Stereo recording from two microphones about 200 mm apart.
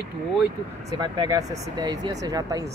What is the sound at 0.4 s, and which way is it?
Speech, 20° right (ahead or behind).